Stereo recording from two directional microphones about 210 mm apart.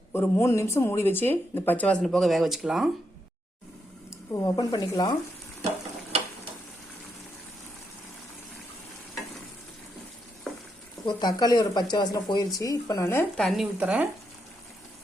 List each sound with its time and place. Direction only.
0.1 s speech: 10° left (ahead or behind)
4.1 s speech: 15° left (ahead or behind)
10.5 s frying: centre (ahead or behind)
11.0 s speech: 20° left (ahead or behind); by 14.1 s 5° right (ahead or behind)